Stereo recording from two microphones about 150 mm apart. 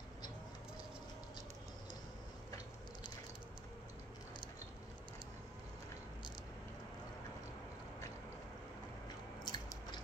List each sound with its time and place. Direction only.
9.4 s biting: 30° left (ahead or behind)